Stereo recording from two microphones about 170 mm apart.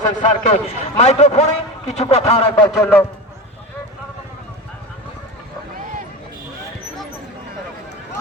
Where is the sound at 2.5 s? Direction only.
15° left (ahead or behind).